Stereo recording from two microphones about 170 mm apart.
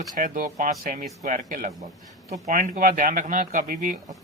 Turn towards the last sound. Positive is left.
turn(degrees=-55)  # may be behind; listen again after turning